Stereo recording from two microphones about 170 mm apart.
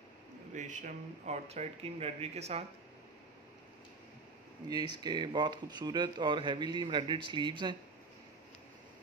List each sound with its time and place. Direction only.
0.6 s speech: 45° right (ahead or behind)
4.6 s speech: 25° right (ahead or behind)